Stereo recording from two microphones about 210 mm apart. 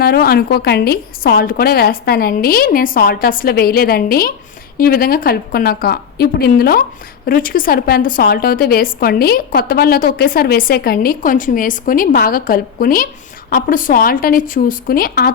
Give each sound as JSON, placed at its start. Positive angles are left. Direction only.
{"t": 0.0, "sound": "a woman's voice", "side_deg": 45}